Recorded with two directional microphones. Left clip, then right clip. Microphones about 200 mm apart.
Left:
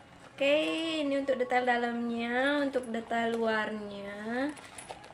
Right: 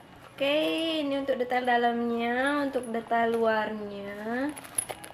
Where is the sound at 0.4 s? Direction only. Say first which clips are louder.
Right 1 dB; 5° left (ahead or behind).